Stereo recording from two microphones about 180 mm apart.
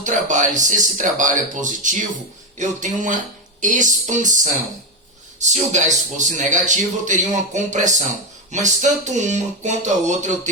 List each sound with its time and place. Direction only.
0.0 s a man's voice: 45° right (ahead or behind)